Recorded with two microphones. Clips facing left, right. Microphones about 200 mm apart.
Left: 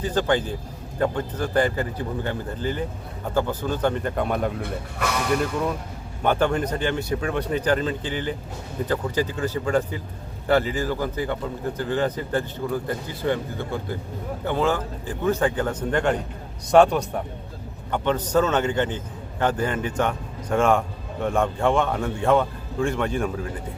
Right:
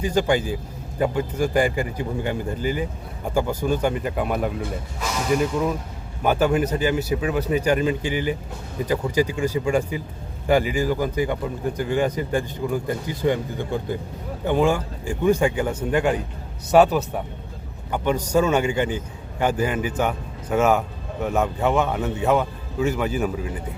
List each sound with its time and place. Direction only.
0.0 s a man's voice: 10° right (ahead or behind)
4.6 s speech: 60° left (ahead or behind)
5.3 s a man's voice: centre (ahead or behind)